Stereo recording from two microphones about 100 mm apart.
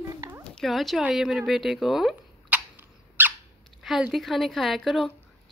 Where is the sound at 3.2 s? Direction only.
20° right (ahead or behind).